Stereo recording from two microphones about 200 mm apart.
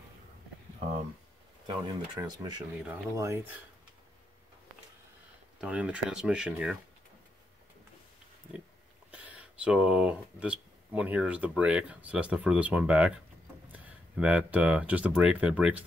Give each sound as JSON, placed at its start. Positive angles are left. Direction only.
{"t": 2.1, "sound": "speech", "side_deg": -20}
{"t": 5.6, "sound": "speech", "side_deg": -5}
{"t": 9.1, "sound": "speech", "side_deg": -5}